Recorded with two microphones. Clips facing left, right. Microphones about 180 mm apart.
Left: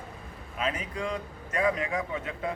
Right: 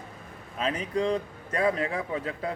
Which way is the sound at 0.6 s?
30° right (ahead or behind).